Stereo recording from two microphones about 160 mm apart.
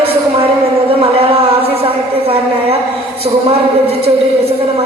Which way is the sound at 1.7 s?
35° right (ahead or behind).